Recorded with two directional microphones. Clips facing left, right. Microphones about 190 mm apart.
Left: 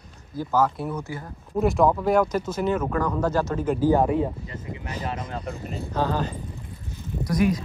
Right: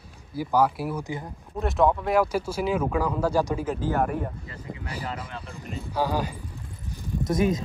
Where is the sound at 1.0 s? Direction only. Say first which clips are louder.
Right 1 dB; 20° right (ahead or behind).